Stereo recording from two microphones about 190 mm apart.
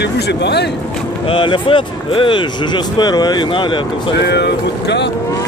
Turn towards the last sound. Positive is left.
turn(degrees=65)  # may be behind; listen again after turning